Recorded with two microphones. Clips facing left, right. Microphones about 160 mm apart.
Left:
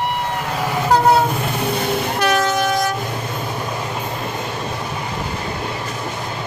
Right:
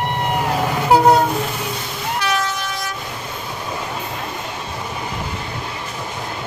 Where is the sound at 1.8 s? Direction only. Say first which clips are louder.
Left 5 dB; 55° left (ahead or behind).